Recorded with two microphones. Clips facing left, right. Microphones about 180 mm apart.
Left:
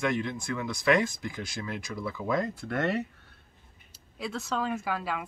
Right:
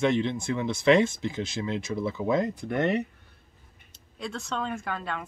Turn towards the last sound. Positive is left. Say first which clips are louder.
# left 1 dB
turn(degrees=5)  # may be behind; listen again after turning